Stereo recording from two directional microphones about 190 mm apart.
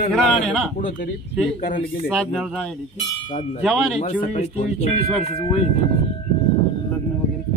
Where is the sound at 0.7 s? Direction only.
45° left (ahead or behind).